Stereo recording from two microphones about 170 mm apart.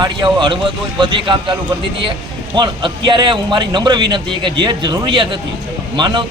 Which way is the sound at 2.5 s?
25° right (ahead or behind).